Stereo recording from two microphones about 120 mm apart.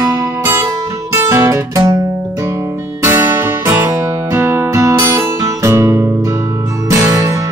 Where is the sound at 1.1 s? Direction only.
25° right (ahead or behind).